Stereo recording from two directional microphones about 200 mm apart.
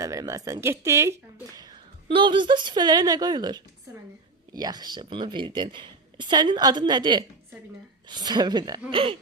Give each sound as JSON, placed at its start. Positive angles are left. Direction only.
{"t": 0.0, "sound": "speech", "side_deg": -15}